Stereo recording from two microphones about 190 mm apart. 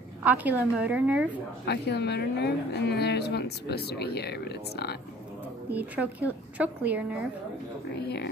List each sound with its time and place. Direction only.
0.2 s a woman's voice: 10° right (ahead or behind)
1.7 s speech: 60° left (ahead or behind)
5.7 s a woman's voice: 10° right (ahead or behind)